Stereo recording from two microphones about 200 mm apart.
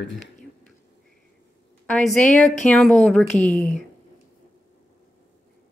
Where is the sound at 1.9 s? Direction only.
5° left (ahead or behind).